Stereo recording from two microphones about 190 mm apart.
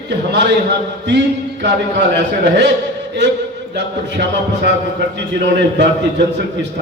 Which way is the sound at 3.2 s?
65° right (ahead or behind).